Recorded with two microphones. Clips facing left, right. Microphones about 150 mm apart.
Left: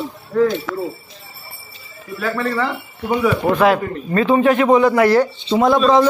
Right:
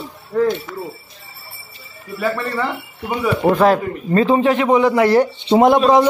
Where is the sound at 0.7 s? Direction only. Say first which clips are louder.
Left 5 dB; 90° left.